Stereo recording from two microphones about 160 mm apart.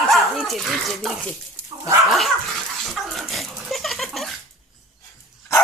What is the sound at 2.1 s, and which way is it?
Speech, centre (ahead or behind).